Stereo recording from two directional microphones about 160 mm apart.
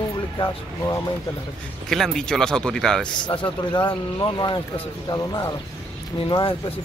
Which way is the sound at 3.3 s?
30° left (ahead or behind).